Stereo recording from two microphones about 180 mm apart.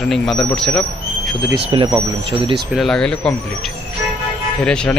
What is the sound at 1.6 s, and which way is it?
Speech, 30° right (ahead or behind).